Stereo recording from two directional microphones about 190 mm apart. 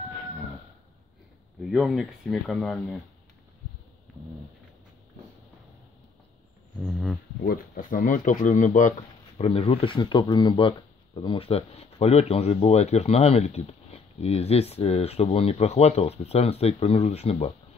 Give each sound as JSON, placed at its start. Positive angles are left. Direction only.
{"t": 1.6, "sound": "speech", "side_deg": 0}
{"t": 6.8, "sound": "a sound", "side_deg": 0}
{"t": 7.4, "sound": "speech", "side_deg": 45}
{"t": 9.4, "sound": "speech", "side_deg": 30}